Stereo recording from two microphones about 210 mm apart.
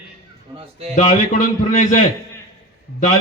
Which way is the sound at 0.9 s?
35° left (ahead or behind).